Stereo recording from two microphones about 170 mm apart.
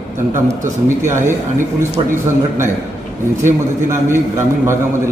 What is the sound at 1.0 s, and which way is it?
Speech, 15° right (ahead or behind).